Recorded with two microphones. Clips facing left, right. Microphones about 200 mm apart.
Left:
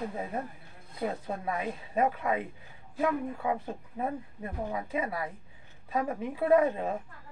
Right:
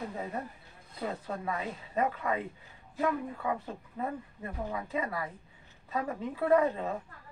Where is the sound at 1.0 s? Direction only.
15° left (ahead or behind).